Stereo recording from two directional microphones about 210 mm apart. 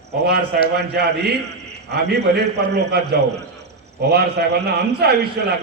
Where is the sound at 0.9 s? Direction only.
50° right (ahead or behind).